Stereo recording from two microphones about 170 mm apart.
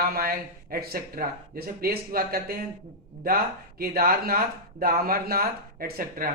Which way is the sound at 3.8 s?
65° right (ahead or behind).